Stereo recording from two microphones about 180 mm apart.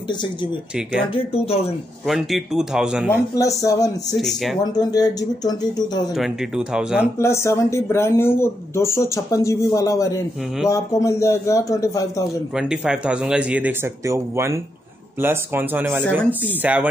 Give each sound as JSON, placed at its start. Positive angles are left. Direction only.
{"t": 0.1, "sound": "speech", "side_deg": 25}
{"t": 2.0, "sound": "speech", "side_deg": 0}
{"t": 3.3, "sound": "speech", "side_deg": 20}
{"t": 4.1, "sound": "speech", "side_deg": 0}
{"t": 4.7, "sound": "speech", "side_deg": 20}
{"t": 6.1, "sound": "speech", "side_deg": 0}
{"t": 7.2, "sound": "speech", "side_deg": 15}
{"t": 12.8, "sound": "speech", "side_deg": -5}